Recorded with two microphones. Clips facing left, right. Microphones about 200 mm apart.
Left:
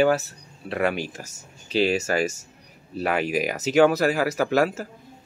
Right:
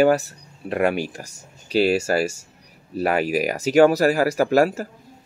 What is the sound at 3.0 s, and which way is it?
Speech, 40° right (ahead or behind).